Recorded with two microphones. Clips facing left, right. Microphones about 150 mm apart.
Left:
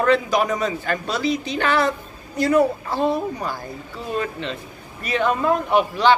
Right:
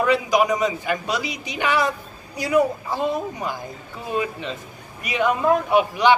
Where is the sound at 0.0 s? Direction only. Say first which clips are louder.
Even; 10° right (ahead or behind).